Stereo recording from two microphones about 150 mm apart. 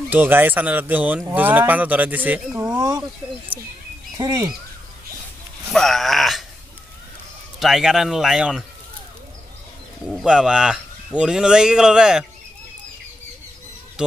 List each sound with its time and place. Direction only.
0.1 s speech: 15° right (ahead or behind)
2.8 s speech: 25° right (ahead or behind)
4.2 s speech: 25° right (ahead or behind)
5.7 s speech: centre (ahead or behind)
7.5 s speech: centre (ahead or behind)
10.0 s speech: 5° right (ahead or behind)
14.0 s speech: 5° right (ahead or behind)